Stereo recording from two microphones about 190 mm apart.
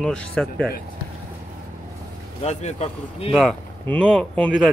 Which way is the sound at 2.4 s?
35° left (ahead or behind).